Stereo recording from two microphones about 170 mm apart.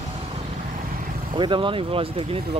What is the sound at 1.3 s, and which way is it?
Speech, 30° right (ahead or behind).